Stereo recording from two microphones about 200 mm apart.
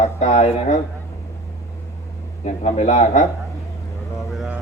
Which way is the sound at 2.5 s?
35° left (ahead or behind).